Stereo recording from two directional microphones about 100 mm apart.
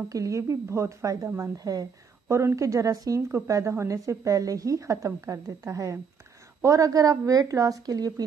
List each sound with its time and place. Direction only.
0.1 s a woman's voice: 35° right (ahead or behind)
2.2 s a woman's voice: 30° right (ahead or behind)